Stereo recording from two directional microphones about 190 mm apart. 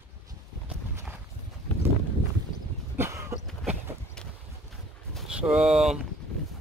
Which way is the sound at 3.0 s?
15° right (ahead or behind).